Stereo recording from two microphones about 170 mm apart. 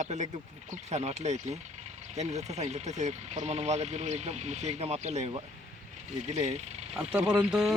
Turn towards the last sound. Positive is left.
turn(degrees=0)  # may be behind; listen again after turning